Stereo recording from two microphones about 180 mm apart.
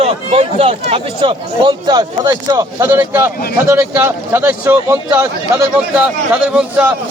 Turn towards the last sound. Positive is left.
turn(degrees=-10)  # may be behind; listen again after turning